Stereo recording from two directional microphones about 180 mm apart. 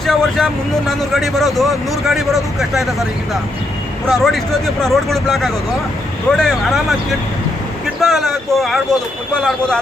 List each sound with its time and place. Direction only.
0.0 s speech: centre (ahead or behind)
4.1 s speech: centre (ahead or behind)